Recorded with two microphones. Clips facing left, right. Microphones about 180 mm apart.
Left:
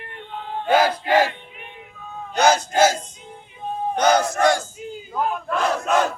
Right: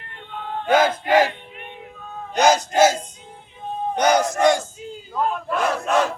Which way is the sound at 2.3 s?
15° right (ahead or behind).